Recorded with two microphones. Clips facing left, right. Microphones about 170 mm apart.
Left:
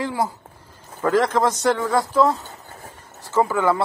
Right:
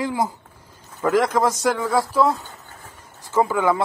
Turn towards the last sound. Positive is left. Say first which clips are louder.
# even
turn(degrees=-10)  # may be behind; listen again after turning